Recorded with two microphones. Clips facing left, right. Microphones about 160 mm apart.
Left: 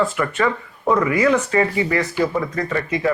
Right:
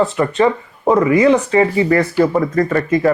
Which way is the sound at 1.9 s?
50° right (ahead or behind).